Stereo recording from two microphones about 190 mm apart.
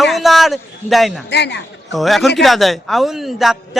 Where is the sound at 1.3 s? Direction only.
65° left (ahead or behind).